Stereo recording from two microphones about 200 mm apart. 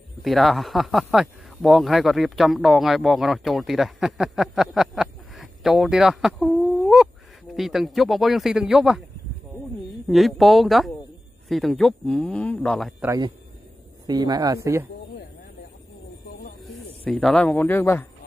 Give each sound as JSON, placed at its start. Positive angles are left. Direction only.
{"t": 0.2, "sound": "speech", "side_deg": 0}
{"t": 10.0, "sound": "speech", "side_deg": 0}
{"t": 14.0, "sound": "speech", "side_deg": -20}
{"t": 16.6, "sound": "a man's voice", "side_deg": 5}